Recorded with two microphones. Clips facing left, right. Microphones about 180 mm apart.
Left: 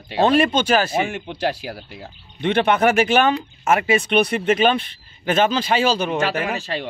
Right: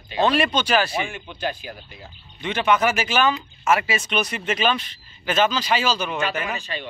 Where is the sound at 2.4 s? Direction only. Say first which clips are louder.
Left 4 dB; 60° left (ahead or behind).